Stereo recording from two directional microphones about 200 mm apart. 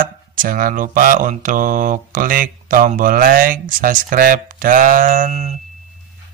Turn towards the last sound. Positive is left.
turn(degrees=-35)  # may be behind; listen again after turning